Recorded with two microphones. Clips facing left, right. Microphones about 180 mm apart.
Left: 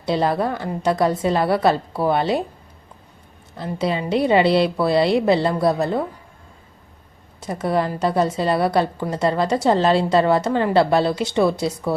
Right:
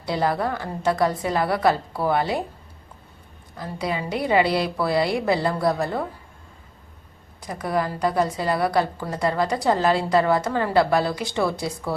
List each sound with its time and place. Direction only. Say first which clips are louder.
0.0 s a woman's voice: left 3 dB; 25° left (ahead or behind)
3.6 s a woman's voice: left 4 dB; 25° left (ahead or behind)
7.4 s a woman's voice: left 4 dB; 25° left (ahead or behind)